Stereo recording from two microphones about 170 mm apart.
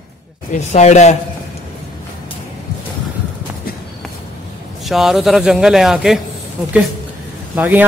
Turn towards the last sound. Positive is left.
turn(degrees=-10)  # may be behind; listen again after turning